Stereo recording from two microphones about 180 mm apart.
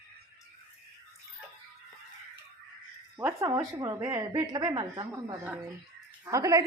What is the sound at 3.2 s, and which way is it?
A woman's voice, 15° right (ahead or behind).